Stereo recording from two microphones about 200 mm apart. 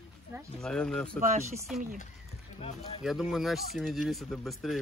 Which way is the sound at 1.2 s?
35° right (ahead or behind).